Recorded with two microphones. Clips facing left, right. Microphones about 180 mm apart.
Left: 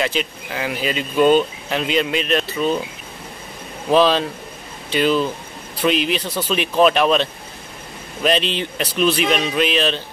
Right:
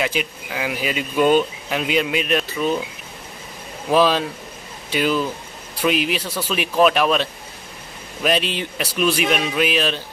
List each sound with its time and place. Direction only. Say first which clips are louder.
0.0 s speech: left 1 dB; 10° right (ahead or behind)
3.9 s speech: left 2 dB; 10° right (ahead or behind)